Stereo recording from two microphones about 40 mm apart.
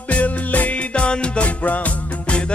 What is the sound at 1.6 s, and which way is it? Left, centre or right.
Music, left.